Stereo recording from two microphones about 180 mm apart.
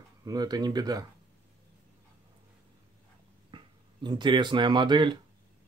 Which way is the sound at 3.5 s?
25° right (ahead or behind).